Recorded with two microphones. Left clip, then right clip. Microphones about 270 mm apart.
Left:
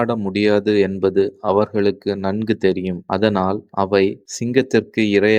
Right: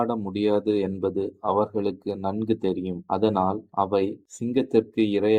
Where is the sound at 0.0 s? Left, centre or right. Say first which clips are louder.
Left 6 dB; left.